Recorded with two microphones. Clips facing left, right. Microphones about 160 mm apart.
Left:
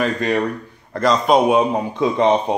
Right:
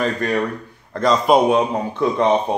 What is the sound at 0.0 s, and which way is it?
A man's voice, 10° left (ahead or behind).